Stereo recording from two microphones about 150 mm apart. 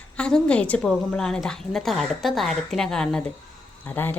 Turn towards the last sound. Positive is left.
turn(degrees=15)  # may be behind; listen again after turning